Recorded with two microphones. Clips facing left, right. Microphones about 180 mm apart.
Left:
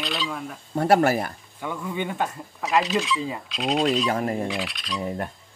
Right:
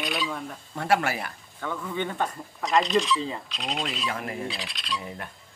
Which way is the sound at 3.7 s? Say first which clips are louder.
Left 10 dB; 40° left (ahead or behind).